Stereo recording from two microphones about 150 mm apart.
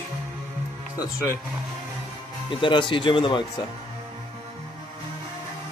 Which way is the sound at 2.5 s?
35° left (ahead or behind).